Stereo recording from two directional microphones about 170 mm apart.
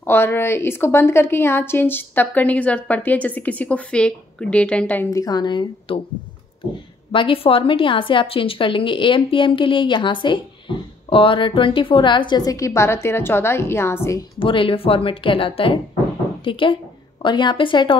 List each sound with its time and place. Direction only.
0.0 s a woman's voice: 15° left (ahead or behind)
5.1 s a woman's voice: 20° left (ahead or behind)
7.1 s a woman's voice: 30° left (ahead or behind); by 14.2 s 15° left (ahead or behind)
14.4 s a woman's voice: 30° left (ahead or behind)